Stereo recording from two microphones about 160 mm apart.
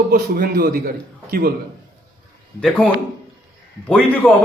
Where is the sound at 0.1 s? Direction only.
75° right (ahead or behind).